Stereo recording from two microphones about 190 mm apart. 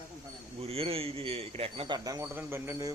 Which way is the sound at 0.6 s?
30° right (ahead or behind).